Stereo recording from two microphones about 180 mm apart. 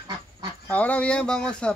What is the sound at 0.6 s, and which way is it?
Speech, 10° left (ahead or behind).